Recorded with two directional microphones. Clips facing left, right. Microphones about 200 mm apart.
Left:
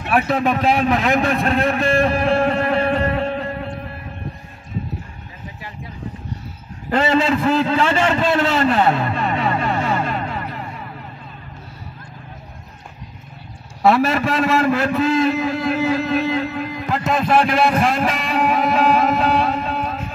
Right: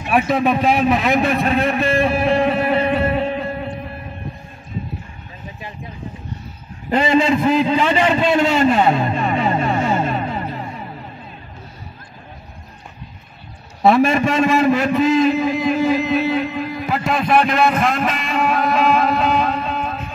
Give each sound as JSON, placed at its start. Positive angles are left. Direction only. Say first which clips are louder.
{"t": 0.1, "sound": "a man's voice", "louder": "right 2 dB", "side_deg": -10}
{"t": 2.4, "sound": "music", "louder": "right 1 dB", "side_deg": -5}
{"t": 6.9, "sound": "a sound", "louder": "right 2 dB", "side_deg": -15}
{"t": 13.8, "sound": "a man's voice", "louder": "right 2 dB", "side_deg": -15}
{"t": 16.7, "sound": "a sound", "louder": "right 1 dB", "side_deg": -10}
{"t": 17.0, "sound": "a man's voice", "louder": "even", "side_deg": 5}